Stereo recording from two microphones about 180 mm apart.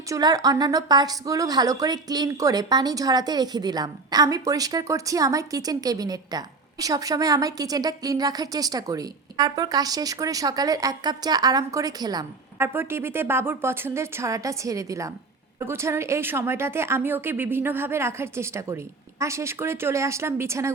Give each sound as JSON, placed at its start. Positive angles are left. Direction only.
{"t": 0.1, "sound": "a woman's voice", "side_deg": -20}